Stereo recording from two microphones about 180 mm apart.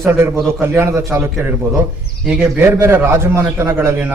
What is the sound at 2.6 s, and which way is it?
A man's voice, 15° right (ahead or behind).